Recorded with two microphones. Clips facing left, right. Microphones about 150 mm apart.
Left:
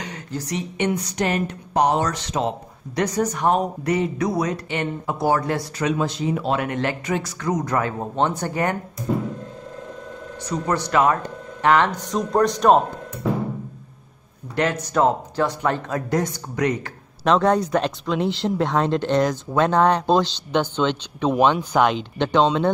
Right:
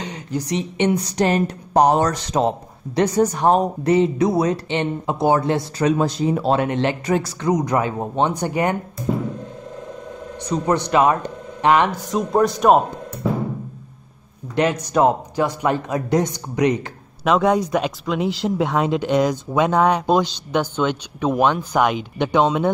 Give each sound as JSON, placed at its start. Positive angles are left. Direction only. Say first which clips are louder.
{"t": 0.0, "sound": "a woman's voice", "louder": "right 4 dB", "side_deg": -20}
{"t": 3.0, "sound": "speech", "louder": "right 4 dB", "side_deg": -30}
{"t": 5.9, "sound": "a woman's voice", "louder": "right 4 dB", "side_deg": -40}
{"t": 7.1, "sound": "a woman's voice", "louder": "right 4 dB", "side_deg": -40}
{"t": 7.4, "sound": "speech", "louder": "right 3 dB", "side_deg": -20}
{"t": 10.4, "sound": "speech", "louder": "right 4 dB", "side_deg": -20}
{"t": 12.1, "sound": "speech", "louder": "right 2 dB", "side_deg": -5}
{"t": 14.5, "sound": "speech", "louder": "right 3 dB", "side_deg": -15}